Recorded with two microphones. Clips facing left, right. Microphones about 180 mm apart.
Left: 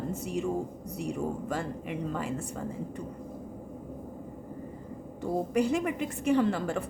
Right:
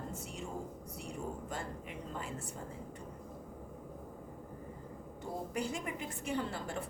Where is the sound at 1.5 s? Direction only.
75° left (ahead or behind).